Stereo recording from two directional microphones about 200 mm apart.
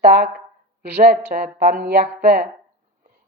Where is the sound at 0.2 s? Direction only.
50° right (ahead or behind).